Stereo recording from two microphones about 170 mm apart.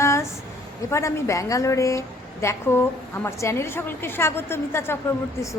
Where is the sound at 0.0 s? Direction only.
15° left (ahead or behind).